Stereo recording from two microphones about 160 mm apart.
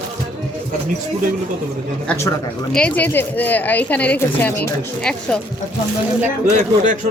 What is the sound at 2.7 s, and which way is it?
A woman's voice, 10° left (ahead or behind).